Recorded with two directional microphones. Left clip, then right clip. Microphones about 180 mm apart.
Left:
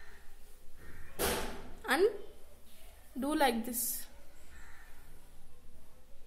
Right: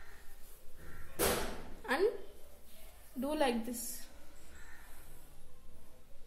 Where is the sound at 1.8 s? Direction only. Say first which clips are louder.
Left 3 dB; 40° left (ahead or behind).